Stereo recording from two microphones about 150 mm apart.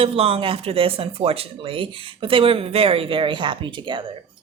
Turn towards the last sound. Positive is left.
turn(degrees=-30)  # may be behind; listen again after turning